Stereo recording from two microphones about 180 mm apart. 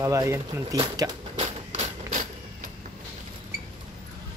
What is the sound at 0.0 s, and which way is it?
Speech, 15° right (ahead or behind).